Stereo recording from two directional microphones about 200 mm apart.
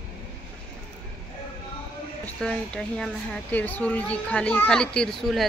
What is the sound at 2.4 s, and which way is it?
Speech, 5° left (ahead or behind).